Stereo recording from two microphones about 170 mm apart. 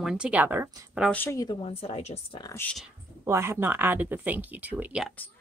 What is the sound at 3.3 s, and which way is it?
Speech, 15° right (ahead or behind).